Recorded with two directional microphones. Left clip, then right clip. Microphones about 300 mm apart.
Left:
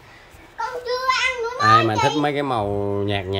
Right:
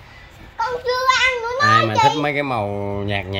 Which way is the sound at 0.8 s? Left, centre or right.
Right.